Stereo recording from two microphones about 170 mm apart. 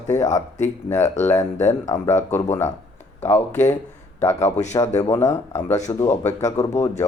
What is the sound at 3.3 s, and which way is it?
Speech, 45° left (ahead or behind).